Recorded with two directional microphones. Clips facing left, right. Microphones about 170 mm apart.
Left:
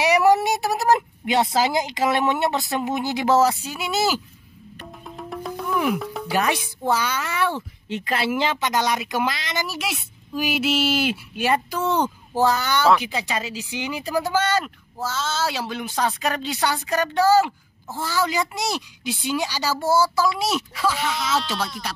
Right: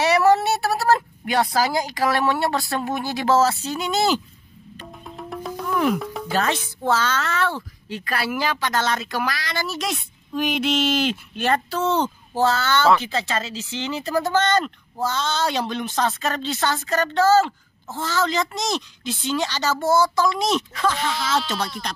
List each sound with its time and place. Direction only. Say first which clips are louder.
0.0 s a woman's voice: even; 15° left (ahead or behind)
4.9 s music: even; centre (ahead or behind)
6.2 s speech: left 1 dB; 10° left (ahead or behind)